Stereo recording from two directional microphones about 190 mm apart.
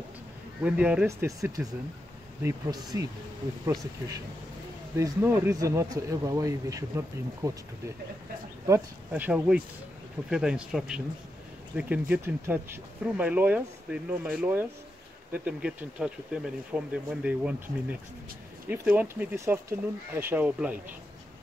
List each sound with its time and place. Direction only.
0.7 s speech: 5° right (ahead or behind)
2.4 s speech: 20° right (ahead or behind)
4.9 s speech: 15° right (ahead or behind)
8.6 s speech: 10° right (ahead or behind)